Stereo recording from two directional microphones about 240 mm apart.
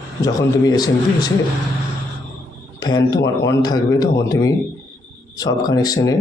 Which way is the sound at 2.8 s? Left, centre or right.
Centre.